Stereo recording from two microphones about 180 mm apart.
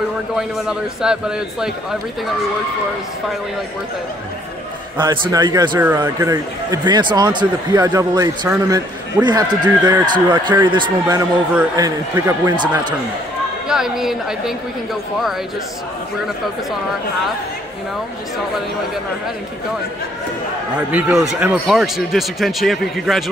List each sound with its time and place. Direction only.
0.4 s speech: 5° right (ahead or behind)
4.9 s speech: 25° right (ahead or behind)
13.7 s speech: 5° right (ahead or behind)
20.9 s speech: centre (ahead or behind)